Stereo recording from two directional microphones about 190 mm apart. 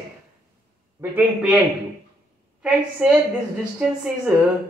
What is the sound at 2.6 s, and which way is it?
Speech, 5° right (ahead or behind).